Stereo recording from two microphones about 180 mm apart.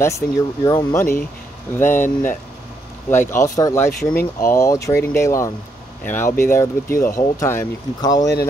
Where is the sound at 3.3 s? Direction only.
15° left (ahead or behind).